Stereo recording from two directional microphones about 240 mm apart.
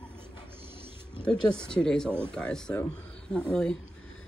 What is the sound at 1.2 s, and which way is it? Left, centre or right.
Speech, centre.